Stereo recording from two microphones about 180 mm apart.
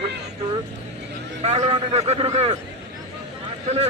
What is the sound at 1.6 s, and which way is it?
Speech, 35° right (ahead or behind).